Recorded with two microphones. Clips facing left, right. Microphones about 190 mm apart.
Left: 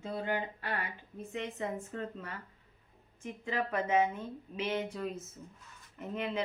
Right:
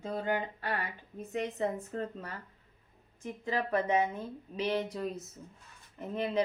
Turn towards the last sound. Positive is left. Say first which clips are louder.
# right 2 dB
turn(degrees=-35)  # may be behind; listen again after turning